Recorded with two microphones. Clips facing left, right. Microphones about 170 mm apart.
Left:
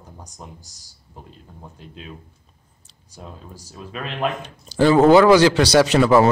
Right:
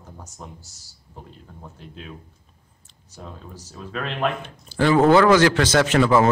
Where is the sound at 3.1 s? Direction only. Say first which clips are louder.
Even; 10° left (ahead or behind).